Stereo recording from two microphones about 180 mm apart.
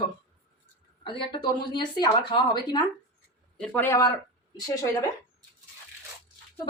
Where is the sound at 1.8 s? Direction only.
25° left (ahead or behind).